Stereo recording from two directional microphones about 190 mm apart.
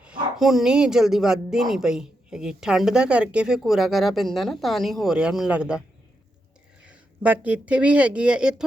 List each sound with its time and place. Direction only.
0.0 s speech: 5° right (ahead or behind)
6.8 s speech: 5° right (ahead or behind)